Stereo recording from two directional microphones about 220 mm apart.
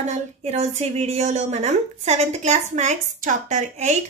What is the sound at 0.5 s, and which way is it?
A woman's voice, 30° right (ahead or behind).